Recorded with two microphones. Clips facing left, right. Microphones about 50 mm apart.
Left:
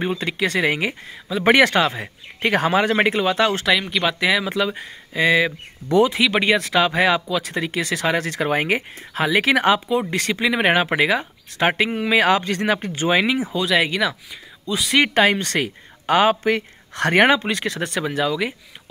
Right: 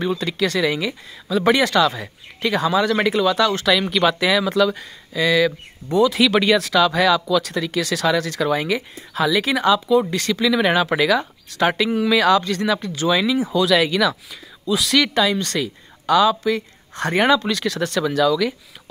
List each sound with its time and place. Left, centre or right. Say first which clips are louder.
0.0 s speech: right 1 dB; left
3.9 s speech: right 2 dB; centre; by 5.5 s left
6.0 s speech: right 2 dB; centre; by 9.8 s left
9.8 s speech: right 3 dB; left
12.9 s speech: right 1 dB; left
14.7 s speech: right 4 dB; centre
15.1 s speech: left 2 dB; left
17.4 s speech: right 2 dB; left